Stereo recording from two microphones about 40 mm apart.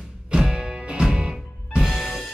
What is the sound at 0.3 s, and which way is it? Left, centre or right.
Music, centre.